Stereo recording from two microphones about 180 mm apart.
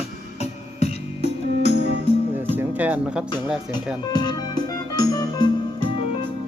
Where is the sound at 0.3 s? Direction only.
35° left (ahead or behind).